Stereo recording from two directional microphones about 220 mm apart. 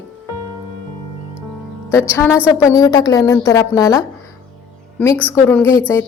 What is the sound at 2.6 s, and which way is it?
Speech, 15° left (ahead or behind).